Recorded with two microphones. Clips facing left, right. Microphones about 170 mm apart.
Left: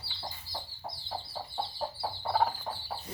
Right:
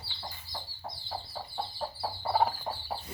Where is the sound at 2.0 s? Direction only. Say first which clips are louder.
Right 1 dB; 5° right (ahead or behind).